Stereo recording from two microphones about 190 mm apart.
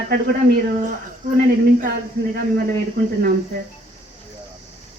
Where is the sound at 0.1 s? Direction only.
50° right (ahead or behind).